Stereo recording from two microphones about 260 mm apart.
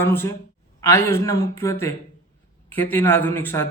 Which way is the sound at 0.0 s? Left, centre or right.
Centre.